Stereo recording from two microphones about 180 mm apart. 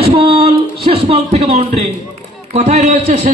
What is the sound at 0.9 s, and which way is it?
A man's voice, 35° right (ahead or behind).